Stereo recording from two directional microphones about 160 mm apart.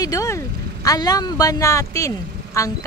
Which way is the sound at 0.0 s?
20° left (ahead or behind).